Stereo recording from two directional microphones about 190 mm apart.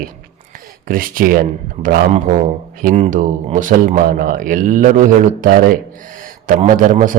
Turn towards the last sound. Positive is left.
turn(degrees=-40)  # may be behind; listen again after turning